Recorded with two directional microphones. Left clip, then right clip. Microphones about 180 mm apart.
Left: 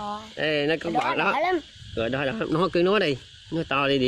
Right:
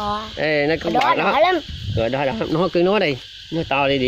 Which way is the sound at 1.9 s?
45° left (ahead or behind).